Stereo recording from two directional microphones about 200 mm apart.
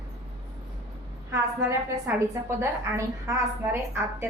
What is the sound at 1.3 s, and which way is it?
A woman's voice, 15° right (ahead or behind).